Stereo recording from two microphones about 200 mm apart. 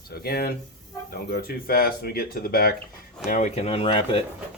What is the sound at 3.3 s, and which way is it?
Speech, 40° left (ahead or behind).